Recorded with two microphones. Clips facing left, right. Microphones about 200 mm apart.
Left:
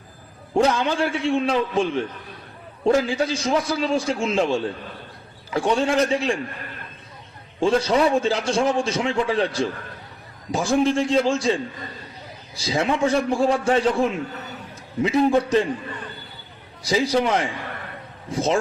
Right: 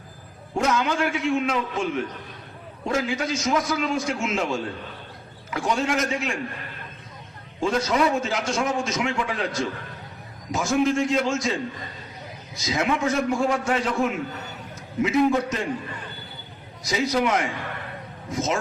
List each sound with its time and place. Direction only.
0.6 s a man's voice: 30° left (ahead or behind)
7.6 s a man's voice: 30° left (ahead or behind)
16.8 s a man's voice: 30° left (ahead or behind)